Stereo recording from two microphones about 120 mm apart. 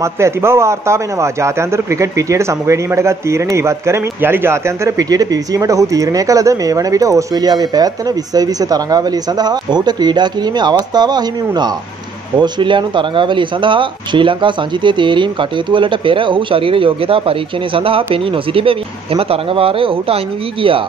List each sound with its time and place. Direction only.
0.0 s a man's voice: 20° right (ahead or behind); by 20.2 s 50° right (ahead or behind)